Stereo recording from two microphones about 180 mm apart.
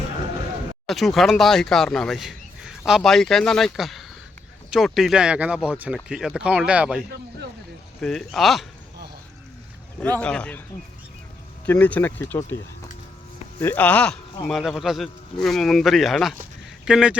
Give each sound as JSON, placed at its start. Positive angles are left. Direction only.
{"t": 0.9, "sound": "speech", "side_deg": 0}
{"t": 8.0, "sound": "speech", "side_deg": 0}
{"t": 10.2, "sound": "speech", "side_deg": 5}
{"t": 11.6, "sound": "speech", "side_deg": 10}
{"t": 13.6, "sound": "speech", "side_deg": 10}